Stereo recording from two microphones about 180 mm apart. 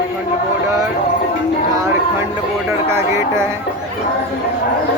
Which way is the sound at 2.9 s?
15° right (ahead or behind).